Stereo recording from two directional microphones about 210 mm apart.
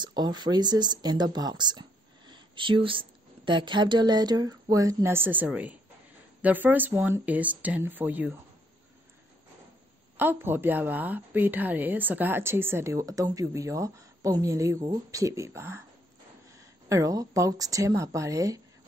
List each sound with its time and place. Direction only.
0.0 s a woman's voice: 20° right (ahead or behind)
10.1 s a woman's voice: 10° right (ahead or behind)